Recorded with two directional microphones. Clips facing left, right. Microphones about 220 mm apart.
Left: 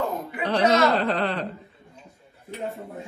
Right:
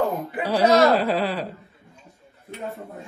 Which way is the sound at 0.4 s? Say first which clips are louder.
Right 3 dB; 10° right (ahead or behind).